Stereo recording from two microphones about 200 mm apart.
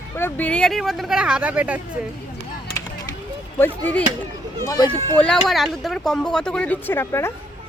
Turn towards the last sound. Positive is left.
turn(degrees=15)  # may be behind; listen again after turning